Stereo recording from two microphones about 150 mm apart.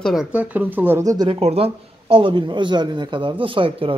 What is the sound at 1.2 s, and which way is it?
A man's voice, 40° right (ahead or behind).